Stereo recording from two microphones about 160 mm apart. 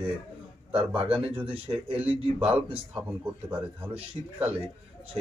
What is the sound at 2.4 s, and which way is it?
A man's voice, 10° right (ahead or behind).